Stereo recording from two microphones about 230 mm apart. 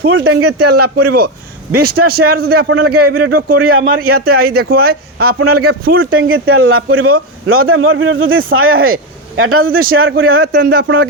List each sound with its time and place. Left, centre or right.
0.1 s speech: right
0.9 s a man's voice: right
3.2 s a man's voice: right
3.9 s a man's voice: right
5.4 s a man's voice: right
5.8 s a man's voice: right
6.1 s speech: right
10.3 s a man's voice: right